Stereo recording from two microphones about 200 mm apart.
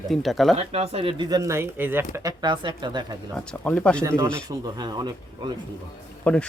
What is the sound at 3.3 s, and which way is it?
Speech, 5° left (ahead or behind).